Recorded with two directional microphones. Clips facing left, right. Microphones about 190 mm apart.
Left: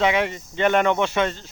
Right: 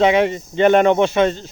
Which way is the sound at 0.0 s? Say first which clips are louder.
Right 6 dB; 25° right (ahead or behind).